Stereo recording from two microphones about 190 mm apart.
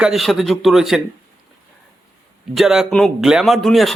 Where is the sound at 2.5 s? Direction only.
Centre (ahead or behind).